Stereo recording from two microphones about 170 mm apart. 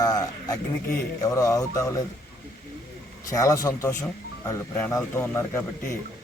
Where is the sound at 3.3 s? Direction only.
20° left (ahead or behind).